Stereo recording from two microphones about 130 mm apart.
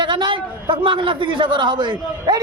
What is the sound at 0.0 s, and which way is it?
A man's voice, 35° right (ahead or behind).